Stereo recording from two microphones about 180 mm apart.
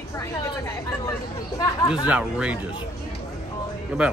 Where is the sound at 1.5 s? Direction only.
25° left (ahead or behind).